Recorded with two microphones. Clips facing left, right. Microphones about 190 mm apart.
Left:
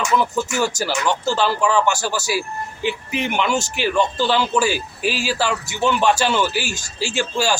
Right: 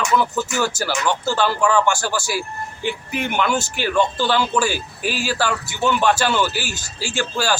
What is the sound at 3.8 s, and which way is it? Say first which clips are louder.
Speech: even; 10° left (ahead or behind).